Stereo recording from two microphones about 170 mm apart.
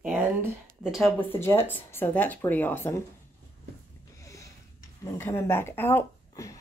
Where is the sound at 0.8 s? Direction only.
5° right (ahead or behind).